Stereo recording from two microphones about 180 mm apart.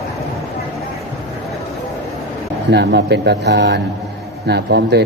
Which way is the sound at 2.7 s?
70° right (ahead or behind).